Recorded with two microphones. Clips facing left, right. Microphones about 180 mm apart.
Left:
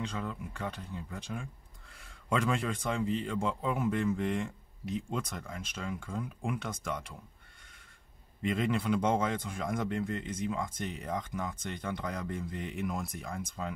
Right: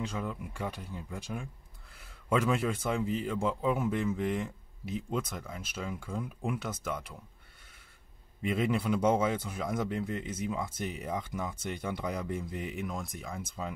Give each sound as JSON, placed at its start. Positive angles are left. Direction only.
{"t": 0.0, "sound": "speech", "side_deg": -10}
{"t": 8.5, "sound": "speech", "side_deg": -10}